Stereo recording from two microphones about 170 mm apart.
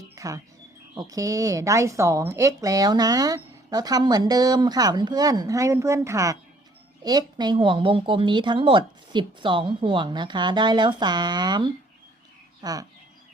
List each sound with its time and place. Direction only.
0.2 s speech: 20° right (ahead or behind)